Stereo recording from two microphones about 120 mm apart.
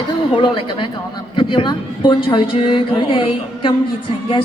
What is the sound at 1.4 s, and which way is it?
A woman's voice, 40° left (ahead or behind).